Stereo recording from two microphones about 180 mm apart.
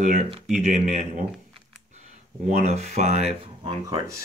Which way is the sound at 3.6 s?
20° right (ahead or behind).